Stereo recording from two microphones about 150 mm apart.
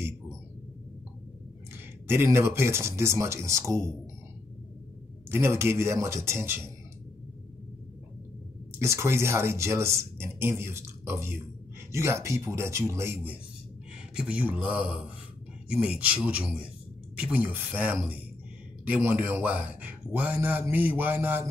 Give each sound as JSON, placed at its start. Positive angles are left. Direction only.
{"t": 2.0, "sound": "speech", "side_deg": -15}
{"t": 5.3, "sound": "speech", "side_deg": -15}
{"t": 8.8, "sound": "speech", "side_deg": -20}